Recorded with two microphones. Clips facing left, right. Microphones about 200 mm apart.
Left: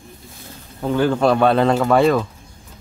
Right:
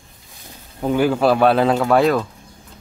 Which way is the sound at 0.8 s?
10° right (ahead or behind).